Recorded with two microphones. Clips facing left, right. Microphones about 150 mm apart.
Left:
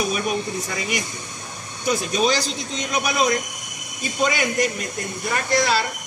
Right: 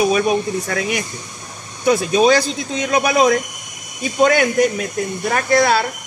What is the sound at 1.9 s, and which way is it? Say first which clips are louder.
A man's voice: right 7 dB; 60° right (ahead or behind).